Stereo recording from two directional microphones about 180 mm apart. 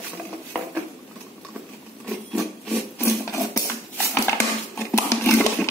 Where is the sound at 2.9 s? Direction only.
15° left (ahead or behind).